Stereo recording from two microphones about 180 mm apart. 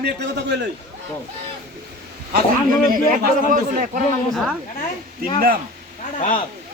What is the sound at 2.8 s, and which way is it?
A man's voice, 50° right (ahead or behind).